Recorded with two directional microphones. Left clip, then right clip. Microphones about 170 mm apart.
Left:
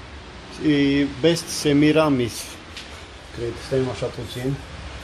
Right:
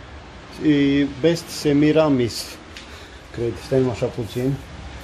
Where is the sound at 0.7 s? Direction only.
15° right (ahead or behind).